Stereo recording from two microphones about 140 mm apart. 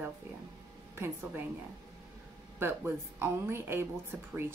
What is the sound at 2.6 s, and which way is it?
A woman's voice, 15° right (ahead or behind).